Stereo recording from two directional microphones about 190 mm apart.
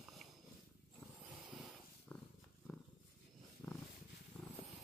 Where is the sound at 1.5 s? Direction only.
Centre (ahead or behind).